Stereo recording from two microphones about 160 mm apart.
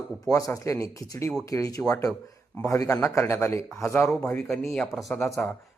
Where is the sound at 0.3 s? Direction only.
20° left (ahead or behind).